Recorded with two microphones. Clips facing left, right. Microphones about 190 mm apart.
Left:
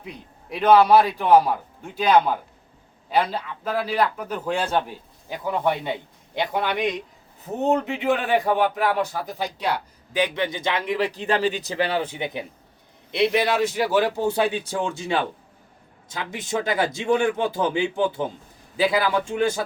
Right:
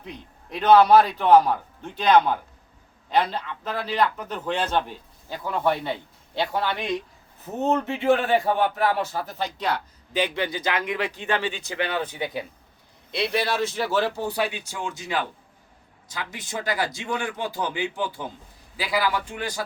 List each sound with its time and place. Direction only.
0.0 s a man's voice: 10° left (ahead or behind); by 19.6 s 25° left (ahead or behind)